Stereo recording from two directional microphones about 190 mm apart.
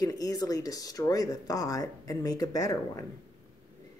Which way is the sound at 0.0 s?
20° left (ahead or behind).